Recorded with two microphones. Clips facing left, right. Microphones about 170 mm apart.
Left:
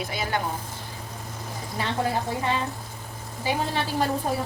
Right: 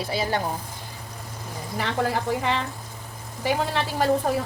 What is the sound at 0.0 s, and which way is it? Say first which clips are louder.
Speech: right 3 dB; 30° right (ahead or behind).